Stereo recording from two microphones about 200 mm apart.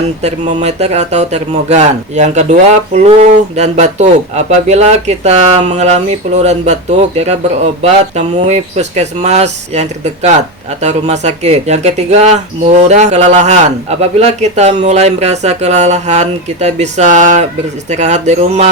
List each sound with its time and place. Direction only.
0.2 s speech: 35° right (ahead or behind)
7.8 s speech: 35° right (ahead or behind)